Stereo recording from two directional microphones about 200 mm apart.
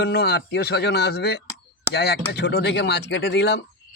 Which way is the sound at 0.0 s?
55° left (ahead or behind).